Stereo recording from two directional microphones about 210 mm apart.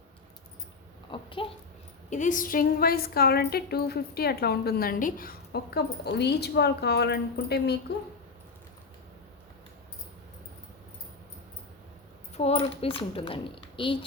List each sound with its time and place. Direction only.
1.1 s a woman's voice: 25° left (ahead or behind)
2.0 s a woman's voice: 35° left (ahead or behind); by 7.8 s 50° left (ahead or behind)
12.4 s a woman's voice: 30° left (ahead or behind)